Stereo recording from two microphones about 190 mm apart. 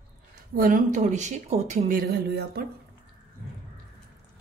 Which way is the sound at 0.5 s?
45° right (ahead or behind).